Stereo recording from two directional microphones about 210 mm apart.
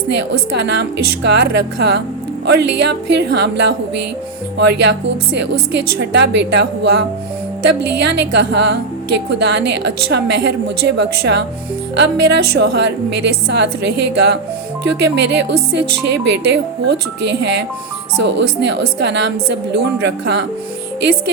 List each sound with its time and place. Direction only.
0.1 s a woman's voice: 55° right (ahead or behind)